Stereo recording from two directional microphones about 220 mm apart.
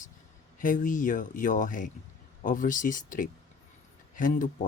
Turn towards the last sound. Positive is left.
turn(degrees=35)  # may be behind; listen again after turning